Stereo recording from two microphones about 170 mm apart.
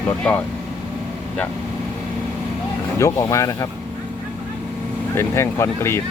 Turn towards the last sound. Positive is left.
turn(degrees=15)  # may be behind; listen again after turning